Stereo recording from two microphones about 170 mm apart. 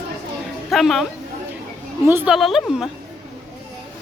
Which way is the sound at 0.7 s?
Centre (ahead or behind).